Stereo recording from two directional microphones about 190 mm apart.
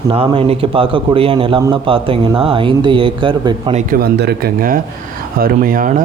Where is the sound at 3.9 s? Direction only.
55° right (ahead or behind).